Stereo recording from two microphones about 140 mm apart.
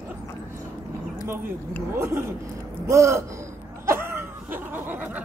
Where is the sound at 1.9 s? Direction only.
20° right (ahead or behind).